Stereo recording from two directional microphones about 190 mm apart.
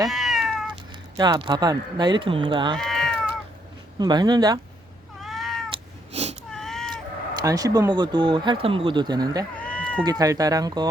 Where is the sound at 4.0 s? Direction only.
20° right (ahead or behind).